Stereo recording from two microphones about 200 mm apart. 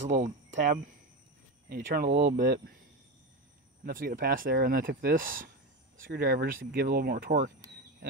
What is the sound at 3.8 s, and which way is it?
Speech, 45° right (ahead or behind).